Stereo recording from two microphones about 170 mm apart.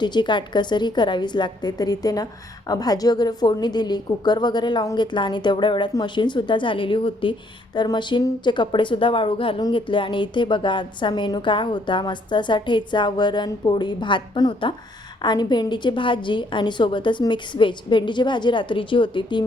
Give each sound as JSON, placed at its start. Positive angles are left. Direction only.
{"t": 0.0, "sound": "a woman's voice", "side_deg": 25}